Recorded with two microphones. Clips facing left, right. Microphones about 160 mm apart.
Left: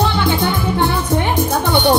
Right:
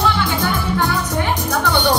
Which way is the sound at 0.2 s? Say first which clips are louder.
Left 3 dB; 20° left (ahead or behind).